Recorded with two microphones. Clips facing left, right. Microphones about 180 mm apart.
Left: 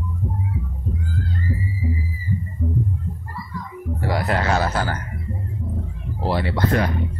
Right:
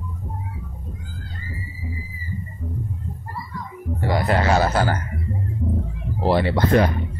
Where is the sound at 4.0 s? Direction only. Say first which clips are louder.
Right 2 dB; centre (ahead or behind).